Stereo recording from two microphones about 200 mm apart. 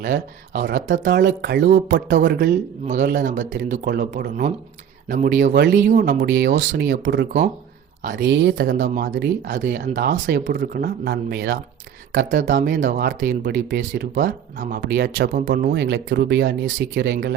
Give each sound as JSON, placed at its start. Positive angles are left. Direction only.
{"t": 0.1, "sound": "speech", "side_deg": -60}
{"t": 1.1, "sound": "speech", "side_deg": -55}
{"t": 1.9, "sound": "speech", "side_deg": -65}
{"t": 2.8, "sound": "speech", "side_deg": -35}
{"t": 5.9, "sound": "speech", "side_deg": -45}
{"t": 6.2, "sound": "speech", "side_deg": -55}
{"t": 8.1, "sound": "speech", "side_deg": -60}
{"t": 9.9, "sound": "speech", "side_deg": -55}
{"t": 12.3, "sound": "speech", "side_deg": -40}